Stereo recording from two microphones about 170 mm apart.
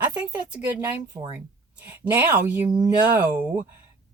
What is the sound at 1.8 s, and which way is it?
Speech, 10° right (ahead or behind).